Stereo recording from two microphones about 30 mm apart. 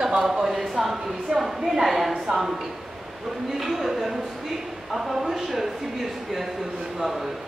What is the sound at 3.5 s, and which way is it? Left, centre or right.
A woman's voice, centre.